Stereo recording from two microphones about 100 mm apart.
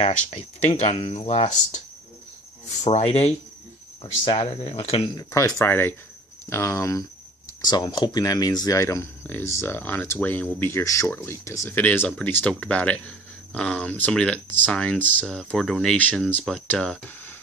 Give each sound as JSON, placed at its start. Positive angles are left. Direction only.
{"t": 0.7, "sound": "speech", "side_deg": 90}
{"t": 2.9, "sound": "speech", "side_deg": 90}
{"t": 4.0, "sound": "speech", "side_deg": 60}
{"t": 5.1, "sound": "speech", "side_deg": 30}
{"t": 7.6, "sound": "speech", "side_deg": 45}